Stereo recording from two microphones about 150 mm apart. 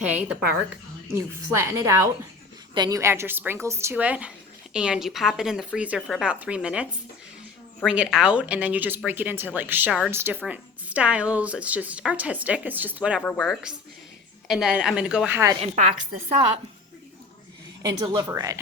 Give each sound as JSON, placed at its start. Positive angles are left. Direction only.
{"t": 0.0, "sound": "a woman's voice", "side_deg": -10}
{"t": 7.9, "sound": "speech", "side_deg": -5}
{"t": 13.2, "sound": "speech", "side_deg": 5}
{"t": 15.6, "sound": "a woman's voice", "side_deg": -55}
{"t": 18.0, "sound": "a woman's voice", "side_deg": -30}
{"t": 18.3, "sound": "a woman's voice", "side_deg": -20}